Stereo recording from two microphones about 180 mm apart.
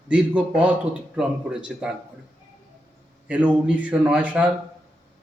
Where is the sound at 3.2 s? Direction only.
5° right (ahead or behind).